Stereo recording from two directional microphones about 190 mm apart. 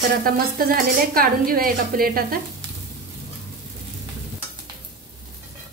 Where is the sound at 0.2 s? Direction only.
50° right (ahead or behind).